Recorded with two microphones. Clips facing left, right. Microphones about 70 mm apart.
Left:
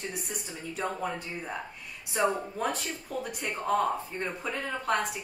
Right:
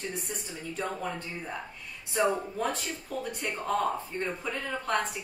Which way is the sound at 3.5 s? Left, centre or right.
Centre.